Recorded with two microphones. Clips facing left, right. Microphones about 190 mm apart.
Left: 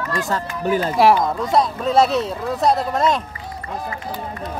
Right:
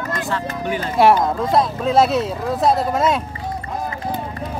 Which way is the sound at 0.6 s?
40° left (ahead or behind).